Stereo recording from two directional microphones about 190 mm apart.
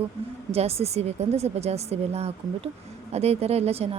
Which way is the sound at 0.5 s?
35° right (ahead or behind).